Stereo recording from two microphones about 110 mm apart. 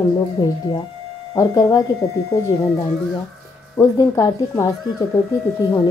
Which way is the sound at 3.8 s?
30° left (ahead or behind).